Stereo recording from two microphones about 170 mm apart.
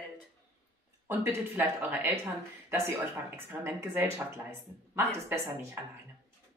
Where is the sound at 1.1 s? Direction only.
15° right (ahead or behind).